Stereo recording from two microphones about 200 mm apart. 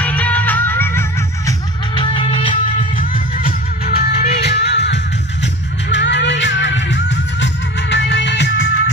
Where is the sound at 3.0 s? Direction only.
45° left (ahead or behind); by 8.9 s 65° left (ahead or behind).